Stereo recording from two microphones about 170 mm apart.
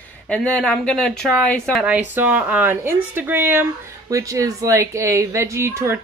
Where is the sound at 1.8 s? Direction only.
10° right (ahead or behind).